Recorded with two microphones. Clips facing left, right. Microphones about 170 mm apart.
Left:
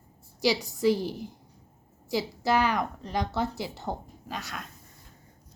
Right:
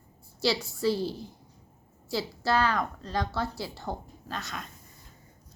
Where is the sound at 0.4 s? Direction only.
15° left (ahead or behind).